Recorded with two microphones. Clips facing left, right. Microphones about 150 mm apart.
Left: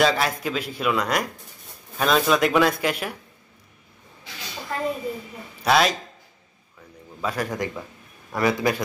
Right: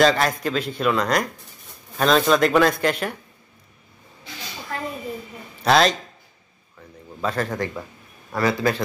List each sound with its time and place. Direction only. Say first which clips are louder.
0.0 s a man's voice: right 3 dB; 5° left (ahead or behind)
5.6 s speech: right 2 dB; 5° left (ahead or behind)
7.2 s a man's voice: right 2 dB; 10° left (ahead or behind)